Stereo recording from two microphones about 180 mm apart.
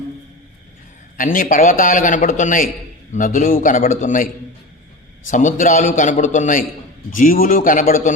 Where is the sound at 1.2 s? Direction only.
50° left (ahead or behind).